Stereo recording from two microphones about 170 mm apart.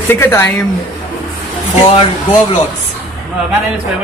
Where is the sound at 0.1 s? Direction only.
15° left (ahead or behind).